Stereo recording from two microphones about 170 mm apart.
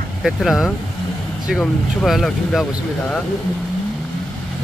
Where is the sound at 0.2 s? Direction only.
Centre (ahead or behind).